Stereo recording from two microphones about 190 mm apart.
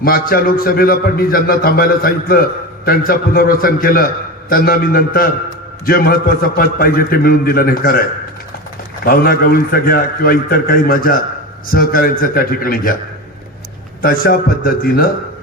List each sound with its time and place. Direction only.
0.0 s a man's voice: 50° left (ahead or behind)
9.0 s a man's voice: 50° left (ahead or behind)
14.0 s a man's voice: 50° left (ahead or behind)